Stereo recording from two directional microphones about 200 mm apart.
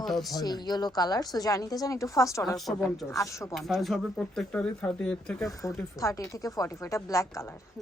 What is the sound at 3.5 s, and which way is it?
Speech, centre (ahead or behind).